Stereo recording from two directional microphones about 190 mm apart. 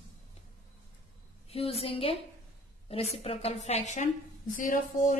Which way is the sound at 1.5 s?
30° left (ahead or behind).